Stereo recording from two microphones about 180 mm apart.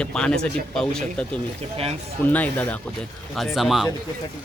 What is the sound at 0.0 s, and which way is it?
A man's voice, 5° left (ahead or behind).